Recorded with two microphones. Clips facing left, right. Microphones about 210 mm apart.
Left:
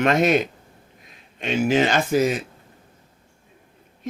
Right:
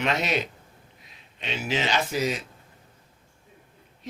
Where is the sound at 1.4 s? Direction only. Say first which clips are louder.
Left 9 dB; 50° left (ahead or behind).